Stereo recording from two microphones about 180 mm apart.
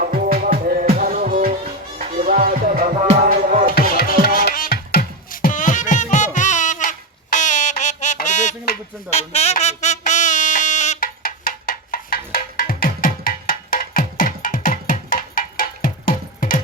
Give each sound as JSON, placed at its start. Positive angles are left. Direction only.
{"t": 0.0, "sound": "music", "side_deg": -55}
{"t": 3.0, "sound": "music", "side_deg": -35}
{"t": 3.2, "sound": "music", "side_deg": -45}
{"t": 4.4, "sound": "music", "side_deg": 55}
{"t": 7.3, "sound": "a sound", "side_deg": 45}